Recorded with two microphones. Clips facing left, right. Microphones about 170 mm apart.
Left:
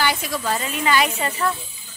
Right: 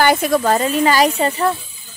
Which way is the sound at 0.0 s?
50° right (ahead or behind).